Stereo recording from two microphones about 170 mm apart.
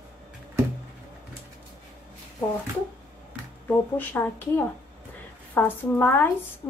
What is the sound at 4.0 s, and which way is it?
A woman's voice, 10° left (ahead or behind).